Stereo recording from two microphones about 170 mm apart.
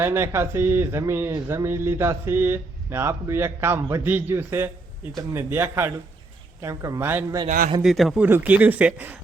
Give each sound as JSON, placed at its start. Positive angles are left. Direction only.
{"t": 0.0, "sound": "speech", "side_deg": -15}
{"t": 7.8, "sound": "speech", "side_deg": 0}